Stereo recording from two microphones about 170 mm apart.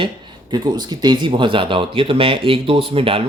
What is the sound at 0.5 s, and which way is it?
Speech, 25° right (ahead or behind).